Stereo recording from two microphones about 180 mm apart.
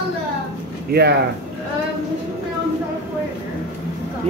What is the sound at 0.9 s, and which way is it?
Speech, 65° right (ahead or behind).